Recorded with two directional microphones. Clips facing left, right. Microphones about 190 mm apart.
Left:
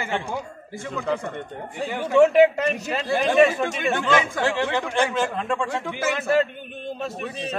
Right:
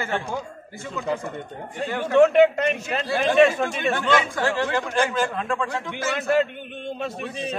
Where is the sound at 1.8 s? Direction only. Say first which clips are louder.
Even; 10° left (ahead or behind).